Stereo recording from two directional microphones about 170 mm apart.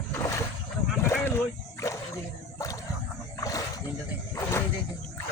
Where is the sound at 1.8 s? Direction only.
20° left (ahead or behind).